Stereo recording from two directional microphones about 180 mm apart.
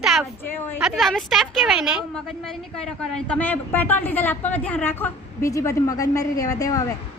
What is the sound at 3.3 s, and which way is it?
A woman's voice, 10° left (ahead or behind).